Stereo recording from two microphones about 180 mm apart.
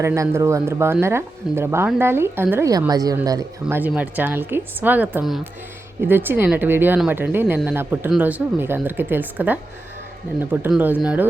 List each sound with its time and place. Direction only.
0.0 s a woman's voice: 15° right (ahead or behind)
3.8 s a woman's voice: 10° right (ahead or behind)